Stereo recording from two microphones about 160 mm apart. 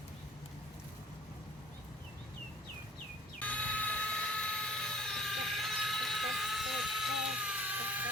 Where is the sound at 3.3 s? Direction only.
10° left (ahead or behind).